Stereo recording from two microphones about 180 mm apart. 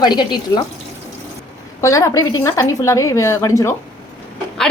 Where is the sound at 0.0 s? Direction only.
25° left (ahead or behind).